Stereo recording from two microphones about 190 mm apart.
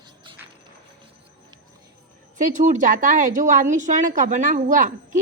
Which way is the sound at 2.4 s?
45° right (ahead or behind).